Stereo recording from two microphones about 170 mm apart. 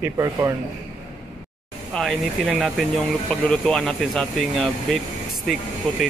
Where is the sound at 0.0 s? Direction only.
15° right (ahead or behind).